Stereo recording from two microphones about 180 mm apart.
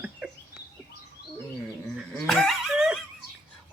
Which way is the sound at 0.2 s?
5° right (ahead or behind).